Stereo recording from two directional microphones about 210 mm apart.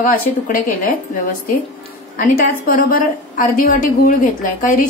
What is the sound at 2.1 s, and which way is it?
A woman's voice, 40° left (ahead or behind).